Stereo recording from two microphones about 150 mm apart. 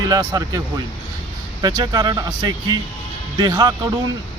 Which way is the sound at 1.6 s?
30° right (ahead or behind).